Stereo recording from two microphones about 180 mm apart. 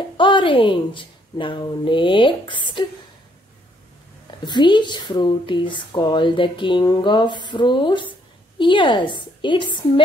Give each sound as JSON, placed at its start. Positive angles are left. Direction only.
{"t": 0.2, "sound": "speech", "side_deg": 25}
{"t": 4.5, "sound": "speech", "side_deg": 25}